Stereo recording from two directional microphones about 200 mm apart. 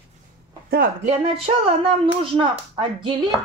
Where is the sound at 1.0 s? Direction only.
30° right (ahead or behind).